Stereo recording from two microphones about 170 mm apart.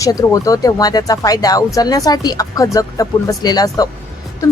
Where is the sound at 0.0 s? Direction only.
20° left (ahead or behind).